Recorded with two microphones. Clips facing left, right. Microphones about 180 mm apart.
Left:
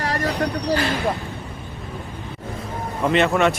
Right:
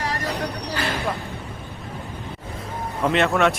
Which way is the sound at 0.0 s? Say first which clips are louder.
Left 3 dB; 45° left (ahead or behind).